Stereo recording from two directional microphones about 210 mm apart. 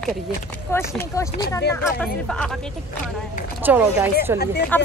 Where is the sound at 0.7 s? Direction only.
15° left (ahead or behind).